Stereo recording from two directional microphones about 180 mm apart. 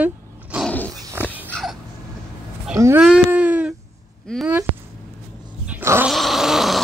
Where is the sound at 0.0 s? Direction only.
10° right (ahead or behind).